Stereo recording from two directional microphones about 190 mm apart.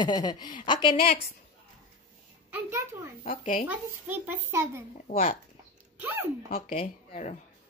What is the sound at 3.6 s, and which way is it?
A child's voice, 10° right (ahead or behind).